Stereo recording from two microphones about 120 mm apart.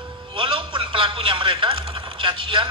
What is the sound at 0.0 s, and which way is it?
A man's voice, 45° right (ahead or behind).